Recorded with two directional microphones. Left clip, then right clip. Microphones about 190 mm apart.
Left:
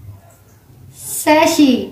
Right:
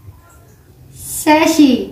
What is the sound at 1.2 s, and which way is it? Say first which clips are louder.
Speech: right 1 dB; 10° left (ahead or behind).